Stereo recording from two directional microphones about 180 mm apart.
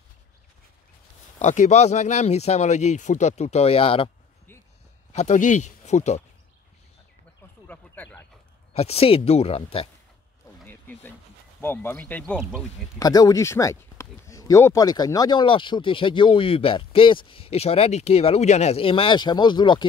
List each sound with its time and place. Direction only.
1.4 s speech: 40° left (ahead or behind)
5.1 s speech: 40° left (ahead or behind)
7.6 s speech: 10° left (ahead or behind)
8.7 s speech: 35° left (ahead or behind)
10.7 s a sound: 10° left (ahead or behind)
11.6 s speech: 15° left (ahead or behind)
13.0 s speech: 20° left (ahead or behind)